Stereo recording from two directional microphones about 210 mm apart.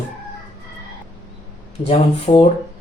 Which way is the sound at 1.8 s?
30° left (ahead or behind).